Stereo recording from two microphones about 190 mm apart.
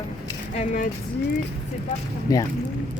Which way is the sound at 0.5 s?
40° left (ahead or behind).